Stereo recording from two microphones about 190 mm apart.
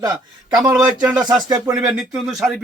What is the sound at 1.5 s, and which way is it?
Speech, 10° right (ahead or behind).